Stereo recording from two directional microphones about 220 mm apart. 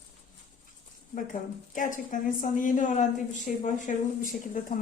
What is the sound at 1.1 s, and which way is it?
A woman's voice, 35° left (ahead or behind).